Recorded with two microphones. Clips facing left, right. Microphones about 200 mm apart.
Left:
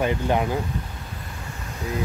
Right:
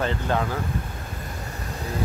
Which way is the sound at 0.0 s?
15° left (ahead or behind).